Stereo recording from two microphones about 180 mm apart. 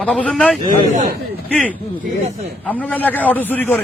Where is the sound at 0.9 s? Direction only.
45° right (ahead or behind).